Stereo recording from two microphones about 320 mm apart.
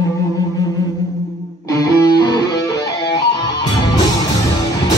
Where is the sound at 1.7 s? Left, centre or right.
Centre.